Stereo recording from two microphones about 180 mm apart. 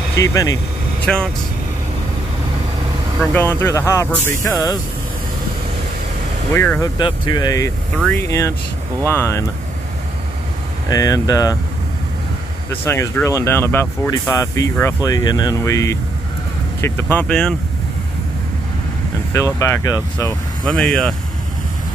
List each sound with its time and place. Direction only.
0.2 s speech: 20° left (ahead or behind)
1.0 s speech: 5° left (ahead or behind)
3.3 s speech: 10° left (ahead or behind)
6.5 s speech: 10° left (ahead or behind)
7.0 s speech: 25° left (ahead or behind)
10.9 s speech: 20° left (ahead or behind)
12.8 s speech: 15° left (ahead or behind)
19.3 s speech: 15° left (ahead or behind)
20.6 s speech: 5° left (ahead or behind)